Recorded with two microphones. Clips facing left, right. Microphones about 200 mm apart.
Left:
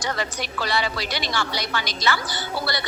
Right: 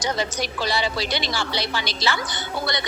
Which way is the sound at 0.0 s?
20° right (ahead or behind).